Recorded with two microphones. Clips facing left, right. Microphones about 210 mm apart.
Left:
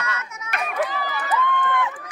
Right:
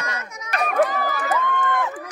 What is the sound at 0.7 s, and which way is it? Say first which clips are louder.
Run: right 6 dB; 50° right (ahead or behind).